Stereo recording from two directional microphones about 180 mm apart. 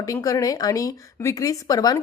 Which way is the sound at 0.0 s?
20° left (ahead or behind).